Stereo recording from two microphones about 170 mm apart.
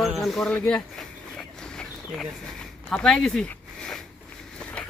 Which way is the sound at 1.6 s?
5° left (ahead or behind).